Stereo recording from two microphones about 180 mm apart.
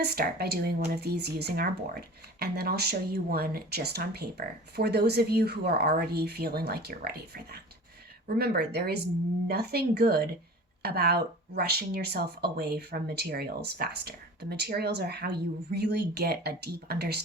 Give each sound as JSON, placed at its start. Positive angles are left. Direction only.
{"t": 0.0, "sound": "speech", "side_deg": -65}